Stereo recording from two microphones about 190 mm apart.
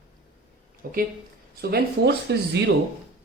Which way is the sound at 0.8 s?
50° right (ahead or behind).